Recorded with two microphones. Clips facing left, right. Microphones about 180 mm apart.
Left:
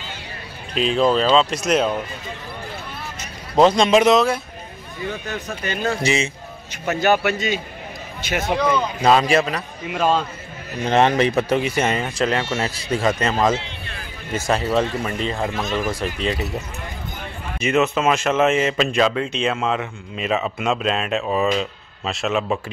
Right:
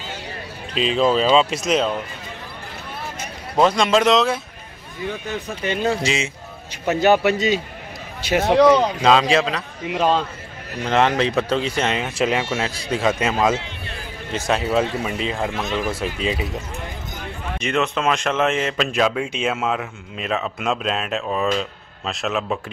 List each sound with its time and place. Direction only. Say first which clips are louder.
0.7 s speech: even; centre (ahead or behind)
3.7 s speech: left 2 dB; 20° left (ahead or behind)
4.1 s speech: left 1 dB; centre (ahead or behind)
5.6 s speech: right 5 dB; 25° right (ahead or behind)
7.0 s speech: right 3 dB; 30° right (ahead or behind)
8.5 s speech: right 8 dB; 85° right
9.0 s speech: even; 5° left (ahead or behind)
10.8 s speech: left 2 dB; 15° left (ahead or behind); by 16.4 s 5° right (ahead or behind)
17.6 s speech: left 3 dB; 5° left (ahead or behind)